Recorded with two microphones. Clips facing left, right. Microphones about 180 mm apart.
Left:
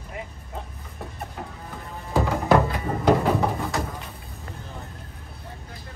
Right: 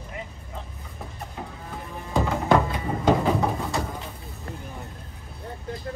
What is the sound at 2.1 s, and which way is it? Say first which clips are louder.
Music: left 1 dB; centre (ahead or behind).